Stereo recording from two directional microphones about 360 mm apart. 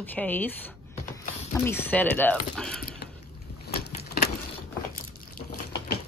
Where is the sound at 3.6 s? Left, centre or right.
Left.